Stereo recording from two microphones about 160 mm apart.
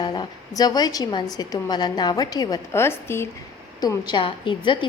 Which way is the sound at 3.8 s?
25° left (ahead or behind).